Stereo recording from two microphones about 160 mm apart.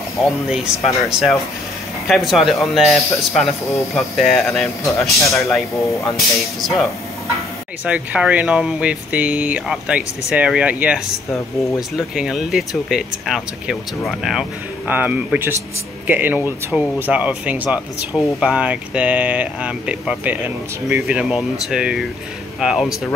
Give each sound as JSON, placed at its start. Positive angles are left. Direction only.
{"t": 0.2, "sound": "speech", "side_deg": 0}
{"t": 4.8, "sound": "speech", "side_deg": 20}
{"t": 6.1, "sound": "speech", "side_deg": 0}
{"t": 12.2, "sound": "speech", "side_deg": -5}